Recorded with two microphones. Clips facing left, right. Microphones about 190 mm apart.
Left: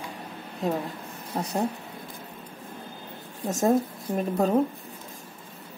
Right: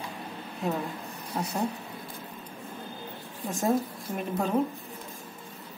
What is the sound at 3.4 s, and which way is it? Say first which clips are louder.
A woman's voice: left 4 dB; 40° left (ahead or behind).